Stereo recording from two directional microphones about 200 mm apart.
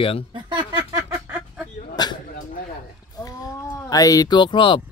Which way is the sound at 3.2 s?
15° left (ahead or behind).